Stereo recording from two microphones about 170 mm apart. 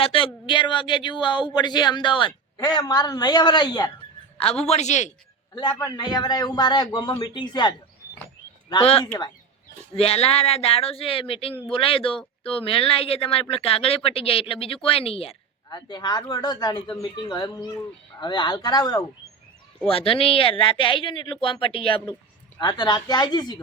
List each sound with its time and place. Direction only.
0.0 s speech: 30° left (ahead or behind)
4.4 s speech: 35° left (ahead or behind)
5.5 s speech: 25° left (ahead or behind)
8.8 s speech: 35° left (ahead or behind)
19.8 s speech: 30° left (ahead or behind)